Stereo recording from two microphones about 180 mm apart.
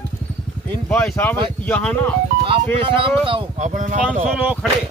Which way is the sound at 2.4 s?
30° right (ahead or behind).